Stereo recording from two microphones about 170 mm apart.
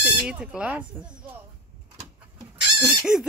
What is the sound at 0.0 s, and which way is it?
Speech, 5° right (ahead or behind).